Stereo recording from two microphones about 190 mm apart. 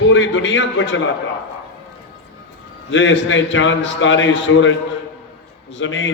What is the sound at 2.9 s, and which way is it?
A man's voice, 80° left.